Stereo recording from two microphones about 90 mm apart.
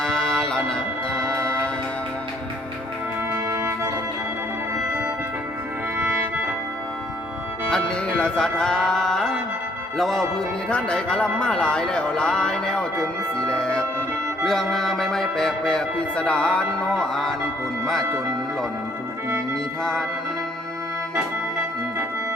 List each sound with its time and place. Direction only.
0.0 s a sound: 5° left (ahead or behind)
3.3 s music: 30° right (ahead or behind)
7.7 s speech: 10° left (ahead or behind)
10.0 s music: 5° left (ahead or behind)
10.7 s speech: 10° left (ahead or behind)
13.5 s music: 10° left (ahead or behind)
19.8 s speech: 5° left (ahead or behind)